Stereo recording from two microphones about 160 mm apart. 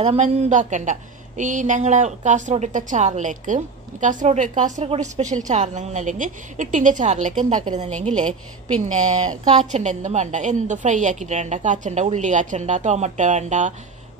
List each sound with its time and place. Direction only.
0.1 s a woman's voice: 50° right (ahead or behind)
8.9 s a woman's voice: 45° right (ahead or behind)